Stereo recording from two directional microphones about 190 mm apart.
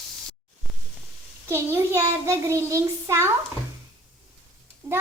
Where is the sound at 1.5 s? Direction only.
15° right (ahead or behind).